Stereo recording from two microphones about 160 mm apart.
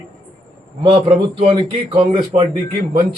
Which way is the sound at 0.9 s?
35° right (ahead or behind).